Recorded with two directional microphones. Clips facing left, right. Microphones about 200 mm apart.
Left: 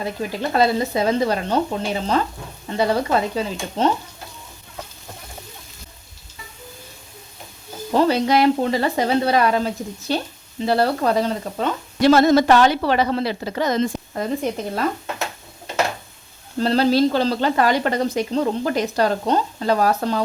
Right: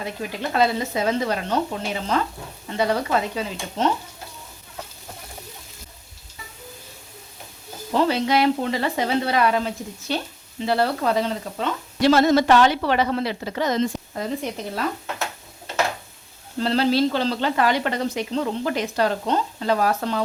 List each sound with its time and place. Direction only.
0.0 s speech: 35° left (ahead or behind)
7.9 s speech: 40° left (ahead or behind)
16.6 s speech: 40° left (ahead or behind)